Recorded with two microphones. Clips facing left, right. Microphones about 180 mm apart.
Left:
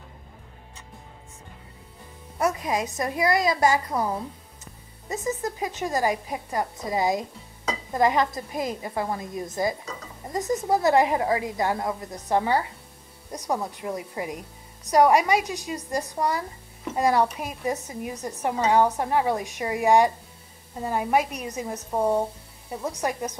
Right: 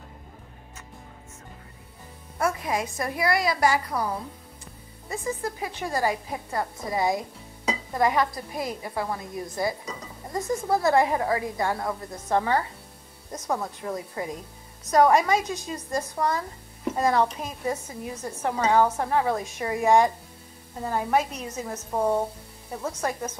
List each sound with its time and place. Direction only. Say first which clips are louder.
2.3 s a woman's voice: left 1 dB; 15° left (ahead or behind)
5.1 s a woman's voice: left 2 dB; 20° left (ahead or behind)